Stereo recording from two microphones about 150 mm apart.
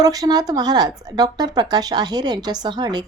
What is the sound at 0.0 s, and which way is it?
Speech, 25° right (ahead or behind).